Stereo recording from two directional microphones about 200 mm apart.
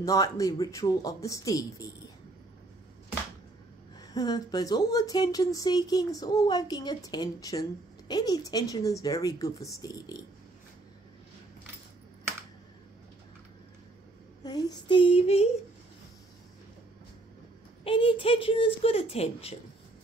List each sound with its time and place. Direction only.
0.0 s speech: 15° left (ahead or behind)
4.1 s speech: 20° left (ahead or behind)
14.4 s speech: 20° left (ahead or behind)
17.8 s speech: 25° left (ahead or behind)